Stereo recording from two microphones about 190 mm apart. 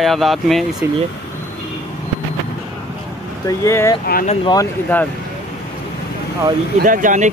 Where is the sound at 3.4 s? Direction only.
15° left (ahead or behind).